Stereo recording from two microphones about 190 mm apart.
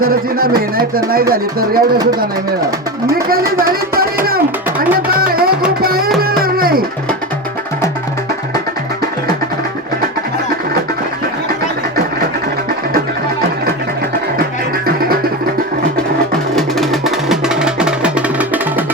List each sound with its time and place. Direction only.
0.0 s a sound: 50° right (ahead or behind)
4.3 s music: 50° right (ahead or behind)
16.6 s music: centre (ahead or behind)